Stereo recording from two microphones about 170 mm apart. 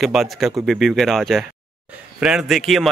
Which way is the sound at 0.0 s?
Centre (ahead or behind).